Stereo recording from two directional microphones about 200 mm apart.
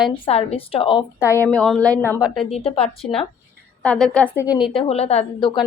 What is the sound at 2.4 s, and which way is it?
Speech, 30° left (ahead or behind).